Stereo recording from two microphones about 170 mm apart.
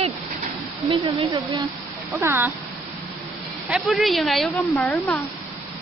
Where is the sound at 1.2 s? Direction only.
20° right (ahead or behind).